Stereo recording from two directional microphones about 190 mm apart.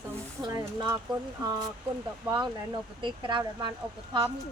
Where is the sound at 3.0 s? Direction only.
25° right (ahead or behind).